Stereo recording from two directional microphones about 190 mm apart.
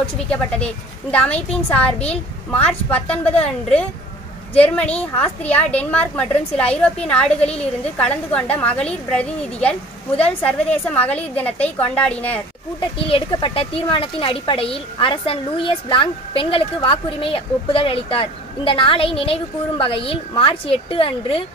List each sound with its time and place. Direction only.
0.3 s a woman's voice: 5° left (ahead or behind)
13.0 s speech: 25° left (ahead or behind)